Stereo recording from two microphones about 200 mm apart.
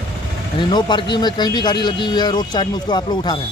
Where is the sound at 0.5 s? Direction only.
20° left (ahead or behind).